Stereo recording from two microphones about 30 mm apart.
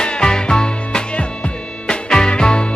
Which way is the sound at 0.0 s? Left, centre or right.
Left.